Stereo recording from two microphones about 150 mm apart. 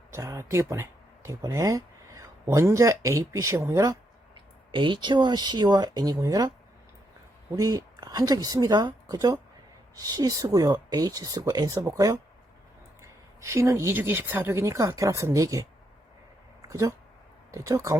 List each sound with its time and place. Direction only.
0.1 s speech: 20° right (ahead or behind)
4.7 s a woman's voice: 35° right (ahead or behind)
7.5 s a woman's voice: 25° right (ahead or behind)
16.6 s a sound: 20° right (ahead or behind)
17.5 s a woman's voice: 20° right (ahead or behind)